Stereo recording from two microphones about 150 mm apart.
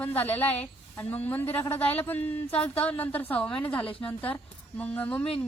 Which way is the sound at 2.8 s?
10° left (ahead or behind).